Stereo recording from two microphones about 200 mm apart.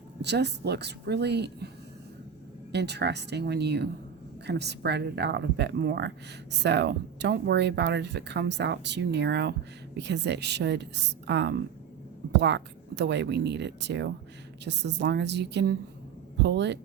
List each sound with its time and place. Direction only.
0.2 s speech: 55° right (ahead or behind)
2.7 s speech: 55° right (ahead or behind)